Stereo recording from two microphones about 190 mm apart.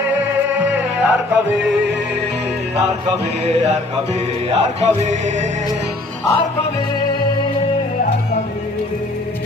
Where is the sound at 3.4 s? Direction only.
35° right (ahead or behind).